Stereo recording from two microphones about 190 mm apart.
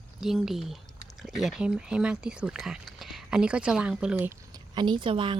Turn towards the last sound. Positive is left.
turn(degrees=-25)  # may be behind; listen again after turning